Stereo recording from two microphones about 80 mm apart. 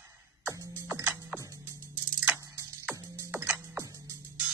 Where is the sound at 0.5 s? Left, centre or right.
Right.